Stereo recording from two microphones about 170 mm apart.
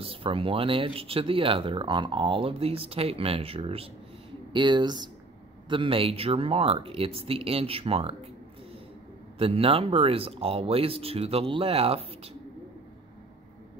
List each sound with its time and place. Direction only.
0.0 s speech: 35° right (ahead or behind)
9.4 s speech: 35° right (ahead or behind)